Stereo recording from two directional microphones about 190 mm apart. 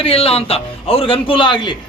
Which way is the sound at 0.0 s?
30° left (ahead or behind).